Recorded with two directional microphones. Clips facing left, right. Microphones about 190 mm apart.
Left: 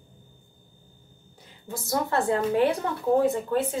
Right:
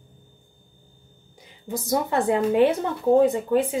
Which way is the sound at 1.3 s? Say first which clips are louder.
Right 6 dB; 15° right (ahead or behind).